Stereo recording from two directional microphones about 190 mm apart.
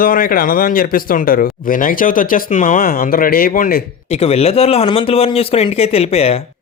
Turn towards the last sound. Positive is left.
turn(degrees=30)  # may be behind; listen again after turning